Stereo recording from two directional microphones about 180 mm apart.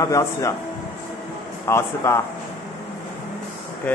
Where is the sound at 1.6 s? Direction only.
15° left (ahead or behind).